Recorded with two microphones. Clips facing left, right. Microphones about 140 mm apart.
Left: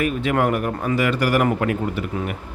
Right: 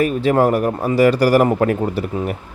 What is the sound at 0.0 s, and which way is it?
A man's voice, 35° right (ahead or behind).